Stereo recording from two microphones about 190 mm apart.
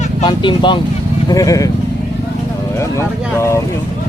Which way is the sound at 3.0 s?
15° left (ahead or behind).